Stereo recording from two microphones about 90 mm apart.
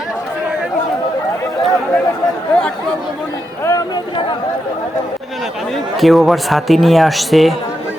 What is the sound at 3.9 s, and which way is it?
Chatter, 70° left (ahead or behind).